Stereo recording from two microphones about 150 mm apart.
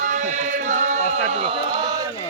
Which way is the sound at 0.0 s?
55° right (ahead or behind).